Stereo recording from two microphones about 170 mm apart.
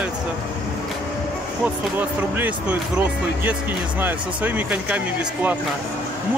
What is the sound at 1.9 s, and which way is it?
Speech, 10° right (ahead or behind).